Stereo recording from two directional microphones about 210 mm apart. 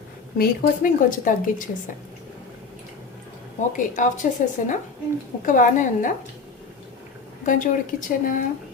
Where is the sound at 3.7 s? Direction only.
40° left (ahead or behind).